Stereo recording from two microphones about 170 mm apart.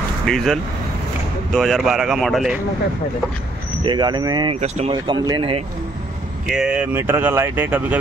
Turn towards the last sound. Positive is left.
turn(degrees=-10)  # may be behind; listen again after turning